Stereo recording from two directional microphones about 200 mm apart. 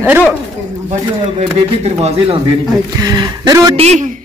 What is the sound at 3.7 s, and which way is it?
Speech, 35° right (ahead or behind).